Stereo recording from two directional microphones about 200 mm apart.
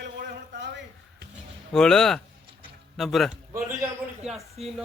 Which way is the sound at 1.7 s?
5° left (ahead or behind).